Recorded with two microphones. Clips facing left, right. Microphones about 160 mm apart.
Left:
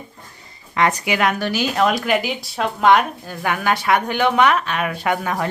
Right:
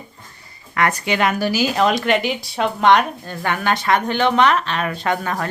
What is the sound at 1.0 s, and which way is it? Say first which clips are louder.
A woman's voice: right 1 dB; centre (ahead or behind).